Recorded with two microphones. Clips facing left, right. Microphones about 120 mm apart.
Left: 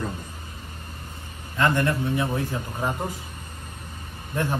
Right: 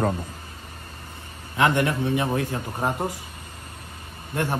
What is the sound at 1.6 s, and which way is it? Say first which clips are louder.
Speech: right 1 dB; 65° right (ahead or behind).